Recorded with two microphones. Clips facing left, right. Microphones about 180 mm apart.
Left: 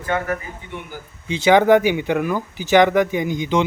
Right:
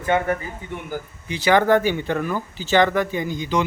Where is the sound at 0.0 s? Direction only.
25° right (ahead or behind).